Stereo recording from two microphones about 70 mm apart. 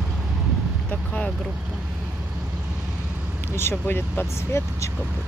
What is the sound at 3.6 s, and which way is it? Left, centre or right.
Speech, left.